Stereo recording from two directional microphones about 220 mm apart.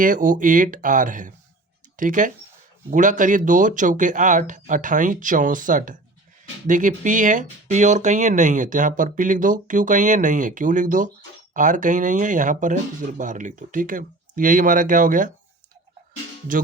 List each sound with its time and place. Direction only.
0.0 s speech: 35° right (ahead or behind)